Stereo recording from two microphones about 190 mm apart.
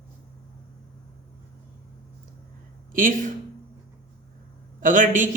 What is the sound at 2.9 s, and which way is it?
Speech, 45° right (ahead or behind).